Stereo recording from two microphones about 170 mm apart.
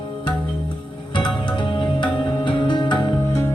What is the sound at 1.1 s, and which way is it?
Music, 30° left (ahead or behind).